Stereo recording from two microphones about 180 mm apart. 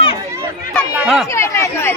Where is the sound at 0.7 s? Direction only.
Centre (ahead or behind).